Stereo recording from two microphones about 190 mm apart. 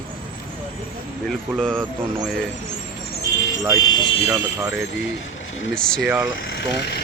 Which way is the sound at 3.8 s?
20° left (ahead or behind).